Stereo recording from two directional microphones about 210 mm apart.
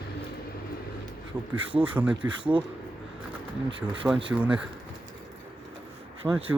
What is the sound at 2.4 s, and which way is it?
Speech, 25° right (ahead or behind).